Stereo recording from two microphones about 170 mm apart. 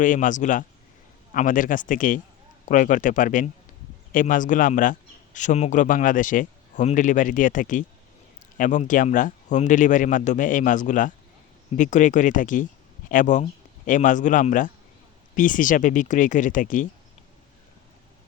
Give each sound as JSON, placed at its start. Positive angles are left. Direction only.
{"t": 0.0, "sound": "a man's voice", "side_deg": 50}